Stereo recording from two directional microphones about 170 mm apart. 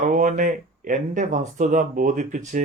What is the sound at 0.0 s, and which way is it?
Speech, 50° right (ahead or behind).